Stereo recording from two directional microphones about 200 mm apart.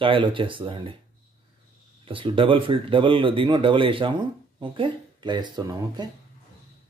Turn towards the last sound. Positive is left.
turn(degrees=-20)  # may be behind; listen again after turning